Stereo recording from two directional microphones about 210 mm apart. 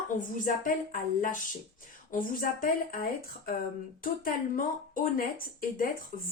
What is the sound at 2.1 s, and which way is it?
Speech, 40° left (ahead or behind).